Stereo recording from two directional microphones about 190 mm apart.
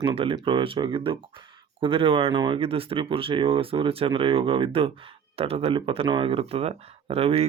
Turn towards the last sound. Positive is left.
turn(degrees=-30)  # may be behind; listen again after turning